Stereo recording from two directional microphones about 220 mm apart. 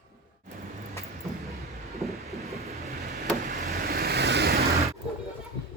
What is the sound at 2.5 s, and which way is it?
Train, 30° right (ahead or behind).